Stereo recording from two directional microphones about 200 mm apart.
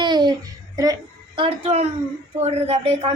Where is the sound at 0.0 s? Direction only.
20° right (ahead or behind).